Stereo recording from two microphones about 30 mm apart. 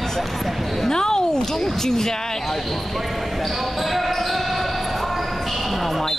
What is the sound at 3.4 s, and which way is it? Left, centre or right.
Basketball bounce, centre.